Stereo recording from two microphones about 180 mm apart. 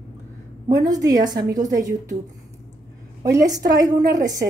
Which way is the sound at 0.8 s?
20° right (ahead or behind).